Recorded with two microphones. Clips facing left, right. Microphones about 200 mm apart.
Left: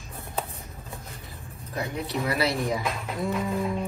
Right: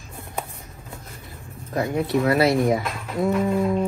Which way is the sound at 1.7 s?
50° right (ahead or behind).